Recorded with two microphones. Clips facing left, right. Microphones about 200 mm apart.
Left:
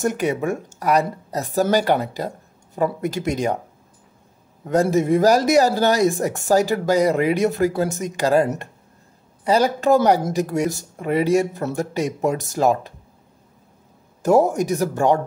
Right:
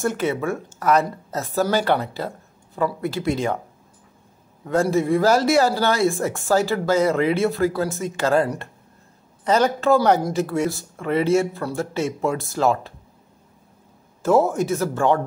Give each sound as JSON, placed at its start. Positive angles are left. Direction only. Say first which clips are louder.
{"t": 0.0, "sound": "speech", "louder": "left 1 dB", "side_deg": 15}
{"t": 4.6, "sound": "speech", "louder": "left 2 dB", "side_deg": 20}
{"t": 10.4, "sound": "speech", "louder": "left 1 dB", "side_deg": 40}
{"t": 10.7, "sound": "speech", "louder": "left 1 dB", "side_deg": 15}
{"t": 14.2, "sound": "speech", "louder": "left 2 dB", "side_deg": 15}